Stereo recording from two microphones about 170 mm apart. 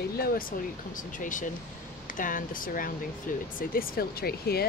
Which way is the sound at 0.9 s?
50° left (ahead or behind).